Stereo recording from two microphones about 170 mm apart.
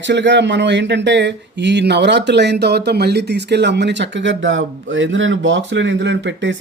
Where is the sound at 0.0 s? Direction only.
90° right.